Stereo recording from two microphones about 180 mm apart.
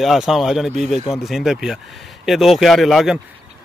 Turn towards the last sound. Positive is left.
turn(degrees=0)  # may be behind; listen again after turning